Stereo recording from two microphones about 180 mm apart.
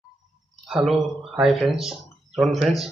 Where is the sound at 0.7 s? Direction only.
Centre (ahead or behind).